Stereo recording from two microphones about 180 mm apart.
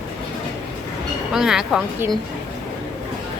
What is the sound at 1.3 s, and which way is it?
Speech, 5° right (ahead or behind).